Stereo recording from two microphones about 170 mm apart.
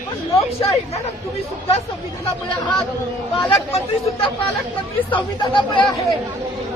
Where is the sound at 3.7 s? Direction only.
35° left (ahead or behind).